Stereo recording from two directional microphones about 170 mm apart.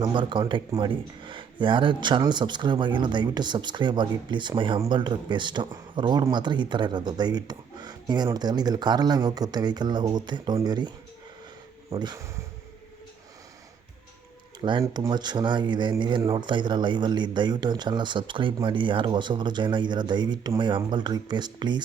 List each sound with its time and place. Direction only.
0.0 s speech: 30° right (ahead or behind)
14.6 s speech: 25° right (ahead or behind)